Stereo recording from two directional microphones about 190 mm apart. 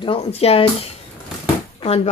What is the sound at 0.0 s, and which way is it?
A woman's voice, 30° left (ahead or behind).